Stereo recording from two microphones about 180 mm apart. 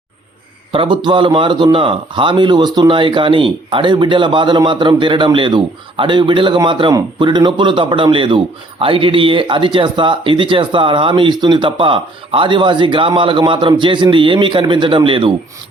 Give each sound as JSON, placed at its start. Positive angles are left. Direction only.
{"t": 0.7, "sound": "a man's voice", "side_deg": -25}